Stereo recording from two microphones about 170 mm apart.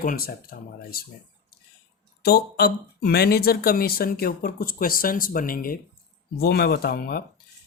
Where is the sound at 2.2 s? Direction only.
70° left (ahead or behind).